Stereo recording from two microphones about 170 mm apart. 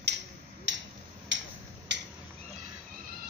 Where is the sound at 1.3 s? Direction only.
90° right.